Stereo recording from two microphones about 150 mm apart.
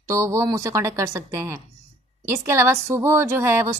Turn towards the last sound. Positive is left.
turn(degrees=-20)  # may be behind; listen again after turning